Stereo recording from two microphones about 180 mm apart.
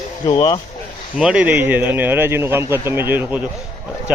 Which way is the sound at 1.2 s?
5° right (ahead or behind).